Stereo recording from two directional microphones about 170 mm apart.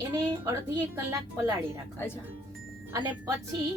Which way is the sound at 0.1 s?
20° right (ahead or behind).